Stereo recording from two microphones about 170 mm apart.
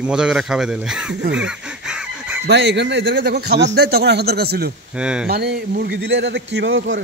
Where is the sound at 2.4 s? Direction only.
90° right; by 4.7 s 65° right (ahead or behind).